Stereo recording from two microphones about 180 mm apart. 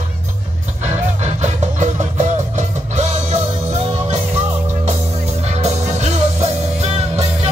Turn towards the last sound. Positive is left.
turn(degrees=-35)  # may be behind; listen again after turning